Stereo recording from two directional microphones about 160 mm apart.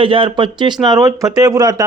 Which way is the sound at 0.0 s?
35° right (ahead or behind).